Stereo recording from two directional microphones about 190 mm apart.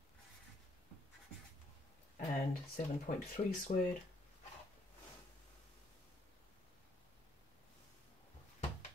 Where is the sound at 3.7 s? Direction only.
40° left (ahead or behind).